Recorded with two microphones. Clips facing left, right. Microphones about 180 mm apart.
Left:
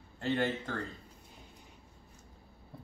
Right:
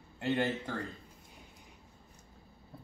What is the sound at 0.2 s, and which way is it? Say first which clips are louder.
Speech: even; 15° right (ahead or behind).